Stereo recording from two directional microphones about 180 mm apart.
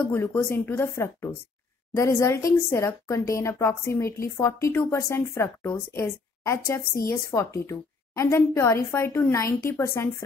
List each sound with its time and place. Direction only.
0.0 s speech: 15° left (ahead or behind)